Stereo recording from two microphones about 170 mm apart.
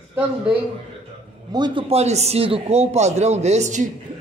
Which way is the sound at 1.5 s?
30° right (ahead or behind).